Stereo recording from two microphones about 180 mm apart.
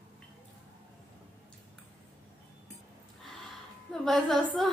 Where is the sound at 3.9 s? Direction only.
Centre (ahead or behind).